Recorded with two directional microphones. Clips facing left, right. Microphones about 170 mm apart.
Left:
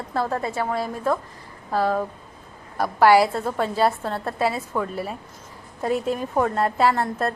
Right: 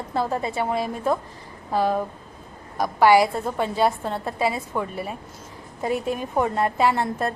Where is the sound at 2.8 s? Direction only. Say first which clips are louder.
Left 1 dB; 5° left (ahead or behind).